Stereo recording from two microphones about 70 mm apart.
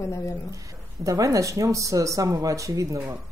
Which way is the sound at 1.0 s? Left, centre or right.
Right.